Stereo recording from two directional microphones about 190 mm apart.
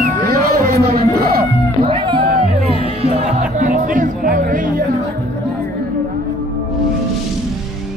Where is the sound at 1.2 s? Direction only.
50° right (ahead or behind).